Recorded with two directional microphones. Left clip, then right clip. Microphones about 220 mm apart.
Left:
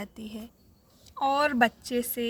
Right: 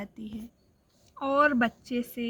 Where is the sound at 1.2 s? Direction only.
40° left (ahead or behind).